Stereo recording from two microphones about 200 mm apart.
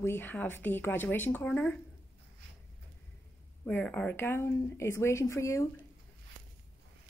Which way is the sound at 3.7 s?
5° left (ahead or behind).